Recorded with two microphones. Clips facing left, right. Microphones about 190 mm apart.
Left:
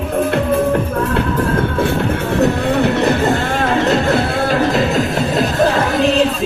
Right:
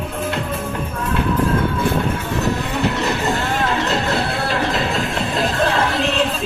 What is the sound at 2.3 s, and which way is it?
Music, 60° left (ahead or behind).